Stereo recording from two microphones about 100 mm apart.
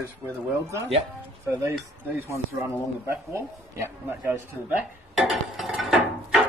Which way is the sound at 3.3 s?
25° right (ahead or behind).